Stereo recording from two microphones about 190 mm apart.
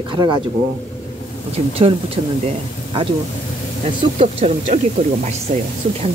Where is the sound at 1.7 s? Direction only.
30° right (ahead or behind).